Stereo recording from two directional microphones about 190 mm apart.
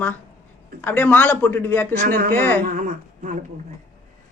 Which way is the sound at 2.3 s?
10° left (ahead or behind).